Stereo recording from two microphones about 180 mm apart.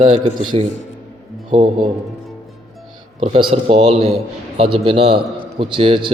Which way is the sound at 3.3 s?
35° right (ahead or behind).